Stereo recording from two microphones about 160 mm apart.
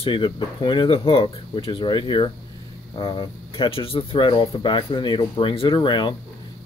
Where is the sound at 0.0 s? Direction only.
30° left (ahead or behind).